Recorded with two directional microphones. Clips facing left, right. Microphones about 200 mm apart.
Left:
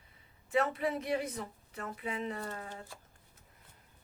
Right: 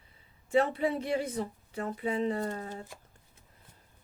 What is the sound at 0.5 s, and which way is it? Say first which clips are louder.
A woman's voice: right 4 dB; 30° right (ahead or behind).